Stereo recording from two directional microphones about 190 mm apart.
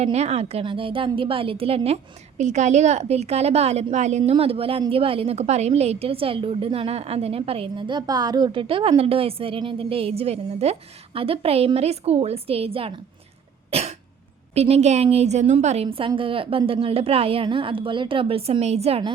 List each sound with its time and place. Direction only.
0.0 s a woman's voice: 35° right (ahead or behind)
13.7 s cough: 35° right (ahead or behind)
14.5 s a woman's voice: 35° right (ahead or behind)